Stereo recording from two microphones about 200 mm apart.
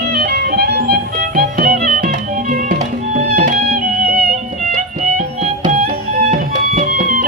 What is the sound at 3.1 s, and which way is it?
Music, 40° right (ahead or behind).